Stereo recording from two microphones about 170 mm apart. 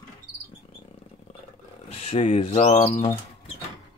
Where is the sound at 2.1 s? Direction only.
40° left (ahead or behind).